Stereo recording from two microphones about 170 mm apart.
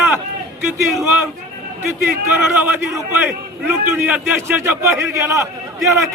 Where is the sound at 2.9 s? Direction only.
10° right (ahead or behind).